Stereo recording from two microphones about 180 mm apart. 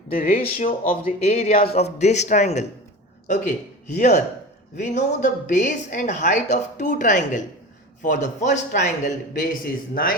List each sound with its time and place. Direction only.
0.3 s a woman's voice: 35° left (ahead or behind); by 10.2 s 50° left (ahead or behind)